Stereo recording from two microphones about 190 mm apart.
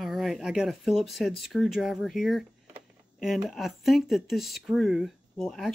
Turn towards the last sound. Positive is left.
turn(degrees=0)  # may be behind; listen again after turning